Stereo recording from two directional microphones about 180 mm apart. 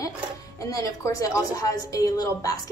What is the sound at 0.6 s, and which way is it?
A woman's voice, 20° left (ahead or behind).